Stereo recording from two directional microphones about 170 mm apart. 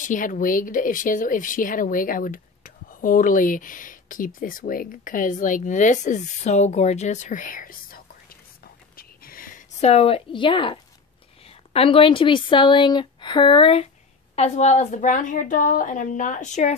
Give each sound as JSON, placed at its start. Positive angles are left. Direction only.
{"t": 0.0, "sound": "speech", "side_deg": 50}
{"t": 8.9, "sound": "a sound", "side_deg": 60}
{"t": 9.8, "sound": "a woman's voice", "side_deg": 40}